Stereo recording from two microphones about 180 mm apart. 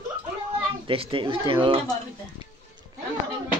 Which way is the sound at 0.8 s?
30° right (ahead or behind).